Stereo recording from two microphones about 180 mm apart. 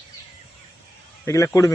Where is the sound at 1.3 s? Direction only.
15° left (ahead or behind).